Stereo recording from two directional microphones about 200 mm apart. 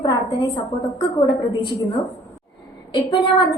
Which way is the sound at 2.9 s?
25° left (ahead or behind).